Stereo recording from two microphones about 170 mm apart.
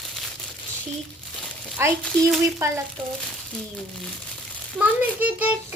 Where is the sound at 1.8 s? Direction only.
15° right (ahead or behind).